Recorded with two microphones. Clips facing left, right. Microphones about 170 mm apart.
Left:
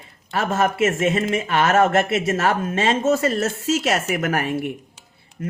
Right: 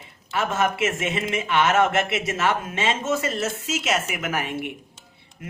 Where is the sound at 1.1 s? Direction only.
45° left (ahead or behind).